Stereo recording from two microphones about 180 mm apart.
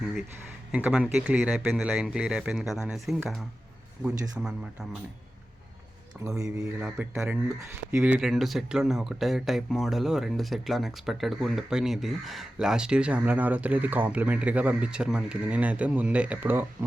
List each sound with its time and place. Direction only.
0.7 s speech: 5° right (ahead or behind)
6.2 s a man's voice: 20° right (ahead or behind)
6.8 s speech: 5° right (ahead or behind)